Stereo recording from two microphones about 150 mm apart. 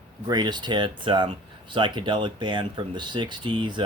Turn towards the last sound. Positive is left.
turn(degrees=-30)  # may be behind; listen again after turning